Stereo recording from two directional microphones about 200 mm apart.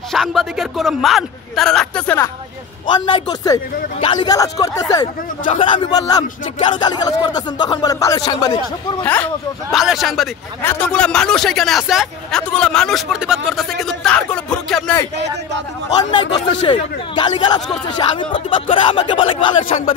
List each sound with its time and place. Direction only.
0.1 s speech: centre (ahead or behind)
2.9 s speech: 20° left (ahead or behind)
9.0 s speech: 5° left (ahead or behind)
16.6 s speech: 25° left (ahead or behind)